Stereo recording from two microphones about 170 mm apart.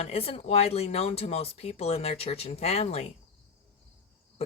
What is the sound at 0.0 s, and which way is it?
Speech, 35° left (ahead or behind).